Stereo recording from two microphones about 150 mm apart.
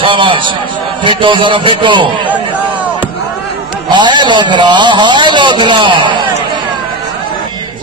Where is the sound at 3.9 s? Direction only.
30° right (ahead or behind).